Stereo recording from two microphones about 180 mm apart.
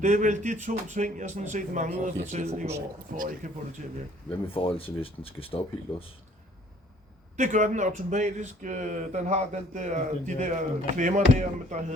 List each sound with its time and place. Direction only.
0.0 s speech: 45° right (ahead or behind)
4.4 s speech: 30° left (ahead or behind)
7.3 s speech: 40° right (ahead or behind)